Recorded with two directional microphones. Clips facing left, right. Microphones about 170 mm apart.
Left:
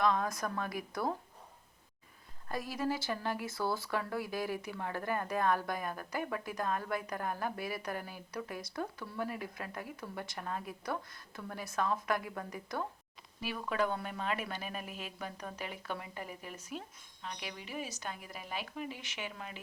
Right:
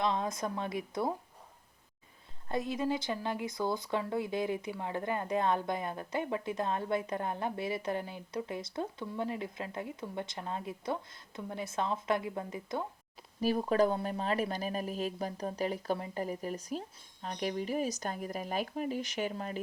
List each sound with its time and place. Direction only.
0.0 s speech: 20° right (ahead or behind)
2.5 s speech: 20° right (ahead or behind)
13.4 s speech: 40° right (ahead or behind)